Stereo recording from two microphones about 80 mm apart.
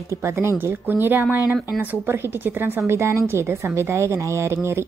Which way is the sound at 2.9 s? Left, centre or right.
Right.